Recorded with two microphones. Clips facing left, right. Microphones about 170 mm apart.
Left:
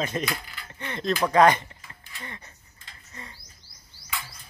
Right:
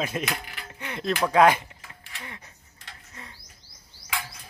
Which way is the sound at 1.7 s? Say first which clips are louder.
Right 1 dB; 75° right (ahead or behind).